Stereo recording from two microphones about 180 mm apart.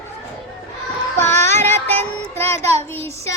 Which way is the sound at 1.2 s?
10° left (ahead or behind).